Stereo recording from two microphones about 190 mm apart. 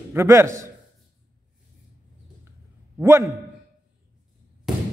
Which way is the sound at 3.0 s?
15° right (ahead or behind).